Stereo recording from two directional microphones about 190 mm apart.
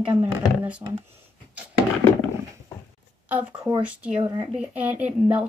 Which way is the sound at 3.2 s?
5° right (ahead or behind).